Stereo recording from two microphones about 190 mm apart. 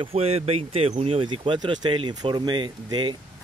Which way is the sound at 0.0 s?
30° right (ahead or behind).